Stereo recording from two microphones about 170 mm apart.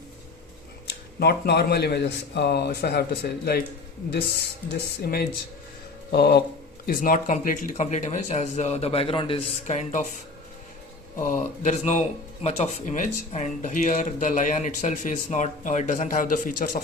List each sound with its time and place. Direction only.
1.2 s a man's voice: 70° left (ahead or behind)
6.8 s speech: 60° left (ahead or behind); by 10.1 s 45° left (ahead or behind)
11.2 s speech: 50° left (ahead or behind)